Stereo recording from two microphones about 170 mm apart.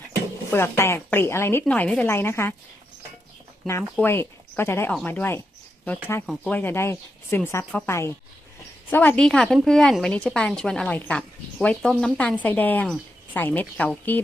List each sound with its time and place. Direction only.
0.5 s a woman's voice: 15° left (ahead or behind)
4.0 s a woman's voice: 15° left (ahead or behind)
6.2 s a woman's voice: centre (ahead or behind)
6.5 s a woman's voice: 10° left (ahead or behind)